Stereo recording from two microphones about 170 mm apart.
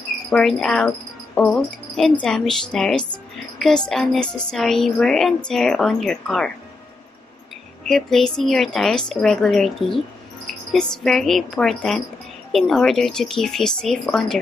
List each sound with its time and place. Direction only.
0.3 s a woman's voice: centre (ahead or behind)
7.8 s a woman's voice: 5° left (ahead or behind)